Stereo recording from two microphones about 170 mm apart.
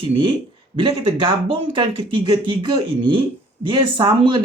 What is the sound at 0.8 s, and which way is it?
Speech, 30° right (ahead or behind).